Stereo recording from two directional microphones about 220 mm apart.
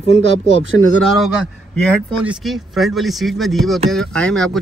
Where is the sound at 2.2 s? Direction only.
Centre (ahead or behind).